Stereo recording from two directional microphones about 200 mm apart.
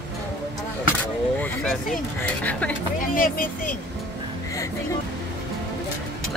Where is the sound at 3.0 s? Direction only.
45° left (ahead or behind).